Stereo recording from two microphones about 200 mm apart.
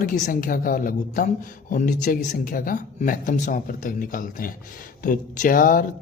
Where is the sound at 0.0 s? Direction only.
45° left (ahead or behind).